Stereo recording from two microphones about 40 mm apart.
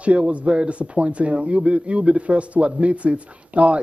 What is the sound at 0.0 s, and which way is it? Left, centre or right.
Speech, right.